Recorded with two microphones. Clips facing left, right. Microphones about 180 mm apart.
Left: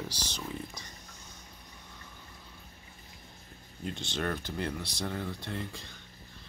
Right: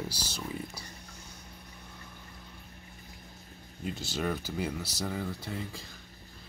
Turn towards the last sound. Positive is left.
turn(degrees=0)  # may be behind; listen again after turning